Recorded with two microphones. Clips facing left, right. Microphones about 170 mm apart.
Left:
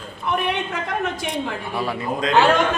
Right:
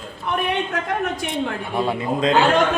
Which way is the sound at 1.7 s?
20° right (ahead or behind).